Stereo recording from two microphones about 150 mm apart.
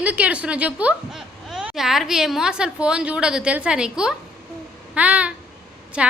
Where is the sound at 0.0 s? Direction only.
10° right (ahead or behind).